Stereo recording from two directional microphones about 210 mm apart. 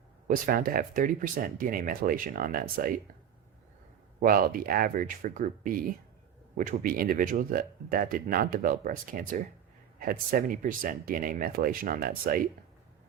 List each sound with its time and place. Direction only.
0.3 s speech: 45° right (ahead or behind)
4.2 s speech: 45° right (ahead or behind)